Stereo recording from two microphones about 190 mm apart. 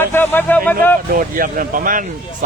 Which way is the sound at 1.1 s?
45° right (ahead or behind).